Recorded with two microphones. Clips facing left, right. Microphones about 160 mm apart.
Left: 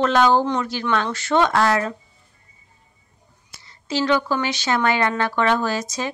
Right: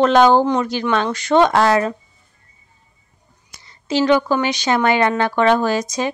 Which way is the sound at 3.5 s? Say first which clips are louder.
Right 5 dB; 15° right (ahead or behind).